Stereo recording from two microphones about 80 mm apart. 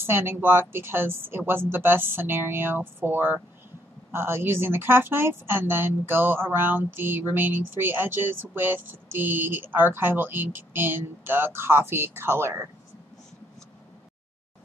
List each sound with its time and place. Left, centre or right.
0.0 s speech: right